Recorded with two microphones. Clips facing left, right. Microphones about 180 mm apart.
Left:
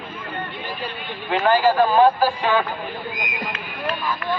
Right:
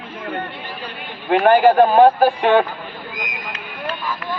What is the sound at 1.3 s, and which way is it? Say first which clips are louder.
A man's voice: right 5 dB; 55° right (ahead or behind).